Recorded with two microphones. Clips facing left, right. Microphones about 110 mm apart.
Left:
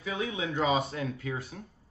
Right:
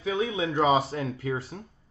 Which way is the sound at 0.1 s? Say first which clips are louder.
Right 5 dB; 25° right (ahead or behind).